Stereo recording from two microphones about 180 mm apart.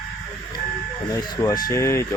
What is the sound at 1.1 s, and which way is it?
Speech, 20° left (ahead or behind).